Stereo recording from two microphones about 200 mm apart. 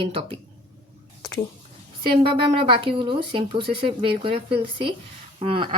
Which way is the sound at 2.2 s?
25° right (ahead or behind).